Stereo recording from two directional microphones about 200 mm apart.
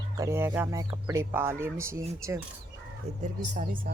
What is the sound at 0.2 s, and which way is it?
Speech, 15° right (ahead or behind).